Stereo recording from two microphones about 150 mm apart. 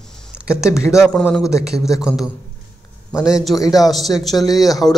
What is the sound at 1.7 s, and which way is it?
Speech, 20° left (ahead or behind).